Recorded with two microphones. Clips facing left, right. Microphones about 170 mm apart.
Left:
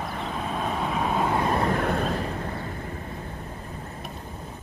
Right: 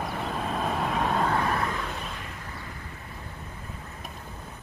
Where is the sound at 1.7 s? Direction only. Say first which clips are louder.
Left 10 dB; 55° left (ahead or behind).